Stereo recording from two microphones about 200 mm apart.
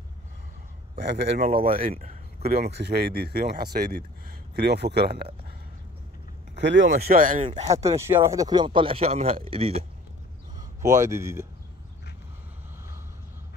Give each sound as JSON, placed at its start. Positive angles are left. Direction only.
{"t": 1.0, "sound": "speech", "side_deg": -60}
{"t": 1.4, "sound": "speech", "side_deg": -45}
{"t": 6.5, "sound": "speech", "side_deg": -60}
{"t": 6.9, "sound": "speech", "side_deg": -45}
{"t": 7.4, "sound": "speech", "side_deg": -30}
{"t": 7.7, "sound": "speech", "side_deg": -15}
{"t": 11.0, "sound": "speech", "side_deg": -15}